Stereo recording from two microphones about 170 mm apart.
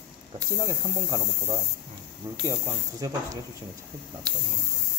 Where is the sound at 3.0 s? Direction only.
20° right (ahead or behind).